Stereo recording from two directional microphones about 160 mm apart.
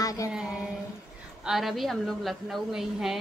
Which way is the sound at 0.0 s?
20° left (ahead or behind).